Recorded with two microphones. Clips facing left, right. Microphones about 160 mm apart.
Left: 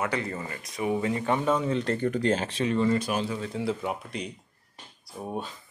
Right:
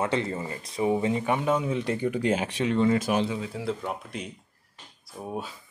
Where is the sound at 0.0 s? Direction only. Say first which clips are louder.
Right 3 dB; 25° right (ahead or behind).